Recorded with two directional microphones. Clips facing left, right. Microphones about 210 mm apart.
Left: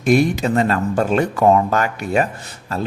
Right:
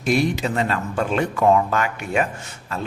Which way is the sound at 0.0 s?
50° left (ahead or behind).